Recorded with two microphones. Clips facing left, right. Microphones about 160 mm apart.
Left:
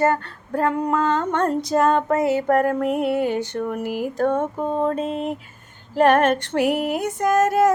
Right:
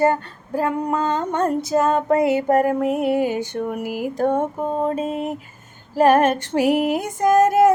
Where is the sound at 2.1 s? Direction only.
15° right (ahead or behind).